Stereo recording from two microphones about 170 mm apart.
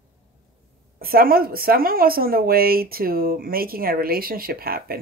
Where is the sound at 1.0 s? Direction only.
60° right (ahead or behind).